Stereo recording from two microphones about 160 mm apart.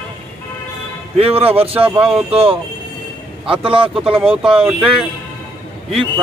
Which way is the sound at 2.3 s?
35° right (ahead or behind).